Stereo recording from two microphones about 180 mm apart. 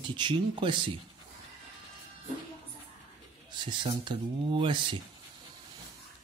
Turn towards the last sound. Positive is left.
turn(degrees=-25)  # may be behind; listen again after turning